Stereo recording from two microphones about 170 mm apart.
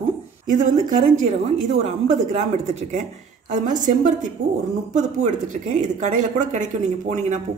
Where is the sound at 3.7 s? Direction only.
50° right (ahead or behind).